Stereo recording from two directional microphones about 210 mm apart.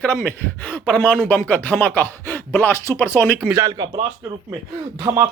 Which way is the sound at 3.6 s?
20° right (ahead or behind).